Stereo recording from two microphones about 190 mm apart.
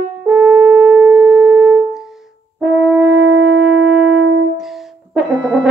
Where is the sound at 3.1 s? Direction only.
70° right (ahead or behind).